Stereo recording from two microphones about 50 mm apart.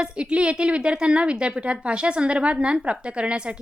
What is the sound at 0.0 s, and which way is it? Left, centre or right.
A woman's voice, right.